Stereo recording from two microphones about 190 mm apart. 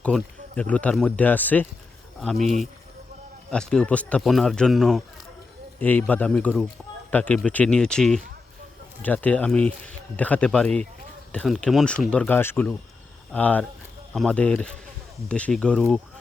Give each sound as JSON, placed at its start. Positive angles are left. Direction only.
{"t": 0.0, "sound": "speech", "side_deg": 5}
{"t": 2.4, "sound": "speech", "side_deg": -35}
{"t": 3.5, "sound": "speech", "side_deg": 5}